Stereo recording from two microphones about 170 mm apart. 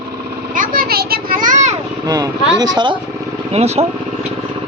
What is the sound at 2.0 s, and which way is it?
Vehicle, 20° right (ahead or behind).